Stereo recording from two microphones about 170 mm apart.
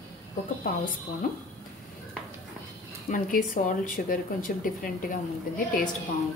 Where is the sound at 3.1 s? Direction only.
50° left (ahead or behind).